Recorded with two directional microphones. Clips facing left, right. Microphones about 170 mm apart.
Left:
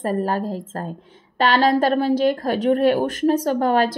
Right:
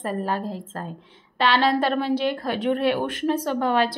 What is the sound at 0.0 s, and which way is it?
A woman's voice, 40° left (ahead or behind).